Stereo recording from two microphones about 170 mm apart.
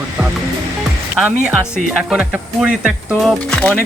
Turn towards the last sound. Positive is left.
turn(degrees=5)  # may be behind; listen again after turning